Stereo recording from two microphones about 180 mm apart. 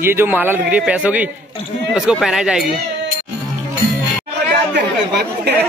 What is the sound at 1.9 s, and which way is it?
Speech, 5° right (ahead or behind).